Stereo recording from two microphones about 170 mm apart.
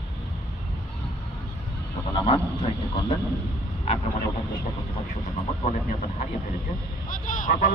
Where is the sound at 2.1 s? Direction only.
30° left (ahead or behind).